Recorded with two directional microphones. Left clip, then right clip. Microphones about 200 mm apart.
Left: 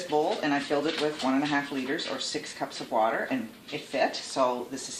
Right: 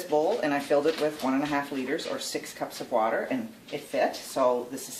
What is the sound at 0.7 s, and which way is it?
Speech, 15° right (ahead or behind).